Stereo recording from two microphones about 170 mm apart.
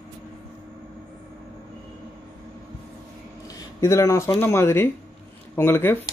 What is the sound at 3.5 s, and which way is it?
Speech, 20° left (ahead or behind).